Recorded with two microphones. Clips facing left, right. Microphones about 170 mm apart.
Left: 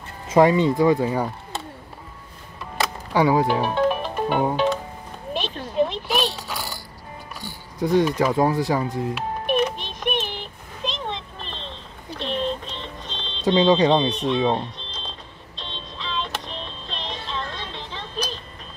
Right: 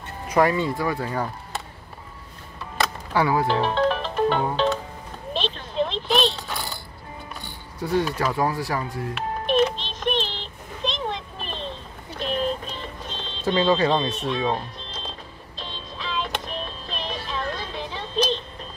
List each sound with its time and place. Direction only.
0.3 s speech: 20° left (ahead or behind)
2.8 s music: 15° left (ahead or behind)
5.3 s oink: 10° left (ahead or behind)
7.8 s speech: 15° left (ahead or behind)
9.1 s music: 10° left (ahead or behind); by 13.4 s 10° right (ahead or behind)
13.6 s speech: 20° left (ahead or behind)
13.9 s speech: 5° right (ahead or behind)
14.4 s speech: 25° left (ahead or behind)
14.8 s music: 5° right (ahead or behind)